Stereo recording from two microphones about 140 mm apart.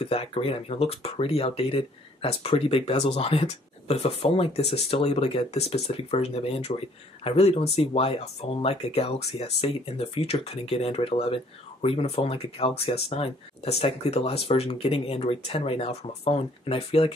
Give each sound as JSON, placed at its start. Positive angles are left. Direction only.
{"t": 0.0, "sound": "speech", "side_deg": 45}